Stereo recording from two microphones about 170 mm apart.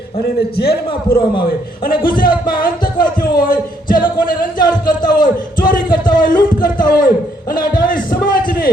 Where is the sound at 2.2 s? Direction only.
25° left (ahead or behind).